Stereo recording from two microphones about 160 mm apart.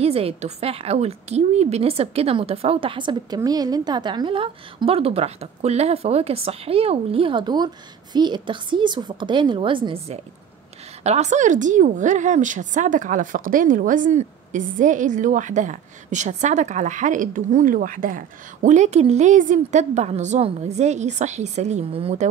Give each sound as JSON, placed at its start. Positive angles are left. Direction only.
{"t": 0.0, "sound": "a woman's voice", "side_deg": -40}